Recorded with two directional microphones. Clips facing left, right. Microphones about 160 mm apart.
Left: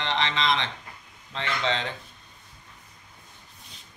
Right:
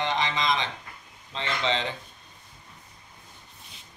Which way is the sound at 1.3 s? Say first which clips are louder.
Left 1 dB; 15° right (ahead or behind).